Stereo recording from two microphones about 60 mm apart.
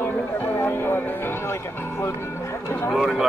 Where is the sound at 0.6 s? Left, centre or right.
Left.